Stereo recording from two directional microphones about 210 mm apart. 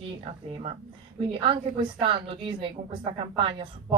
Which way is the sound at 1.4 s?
25° right (ahead or behind).